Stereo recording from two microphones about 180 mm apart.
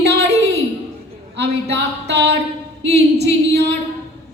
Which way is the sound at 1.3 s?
75° right (ahead or behind).